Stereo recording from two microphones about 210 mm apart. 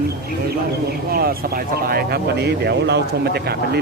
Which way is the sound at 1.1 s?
45° right (ahead or behind).